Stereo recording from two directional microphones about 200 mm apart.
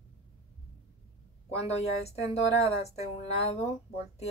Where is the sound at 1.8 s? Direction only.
30° left (ahead or behind).